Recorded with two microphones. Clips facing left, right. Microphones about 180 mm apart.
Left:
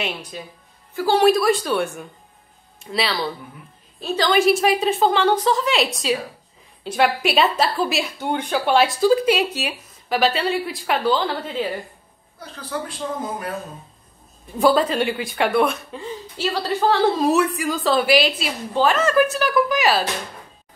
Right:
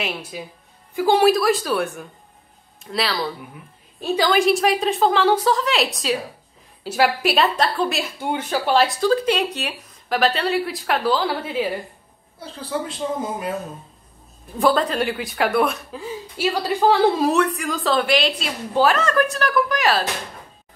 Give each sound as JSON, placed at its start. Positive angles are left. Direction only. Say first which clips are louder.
{"t": 0.0, "sound": "speech", "louder": "even", "side_deg": -5}
{"t": 1.3, "sound": "a woman's voice", "louder": "left 1 dB", "side_deg": 0}
{"t": 4.0, "sound": "speech", "louder": "right 2 dB", "side_deg": -10}
{"t": 4.3, "sound": "a woman's voice", "louder": "left 2 dB", "side_deg": 0}
{"t": 12.4, "sound": "a woman's voice", "louder": "right 2 dB", "side_deg": -30}
{"t": 14.6, "sound": "a woman's voice", "louder": "left 2 dB", "side_deg": 0}
{"t": 17.3, "sound": "a woman's voice", "louder": "left 1 dB", "side_deg": 5}